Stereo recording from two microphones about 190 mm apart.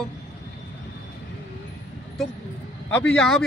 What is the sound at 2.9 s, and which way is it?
Speech, 5° left (ahead or behind).